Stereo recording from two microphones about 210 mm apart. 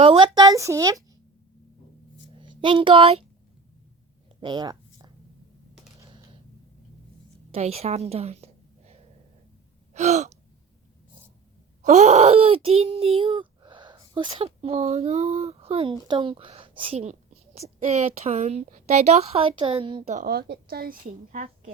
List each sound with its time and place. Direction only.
0.0 s a woman's voice: 25° right (ahead or behind)
2.4 s speech: 20° right (ahead or behind)
4.4 s a sound: 20° right (ahead or behind)
7.5 s a woman's voice: 30° right (ahead or behind)
9.9 s gasp: 30° right (ahead or behind)
11.8 s a woman's voice: 30° right (ahead or behind)